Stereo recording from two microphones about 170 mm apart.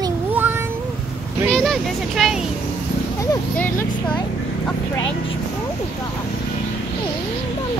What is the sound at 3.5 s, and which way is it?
Speech, 10° left (ahead or behind).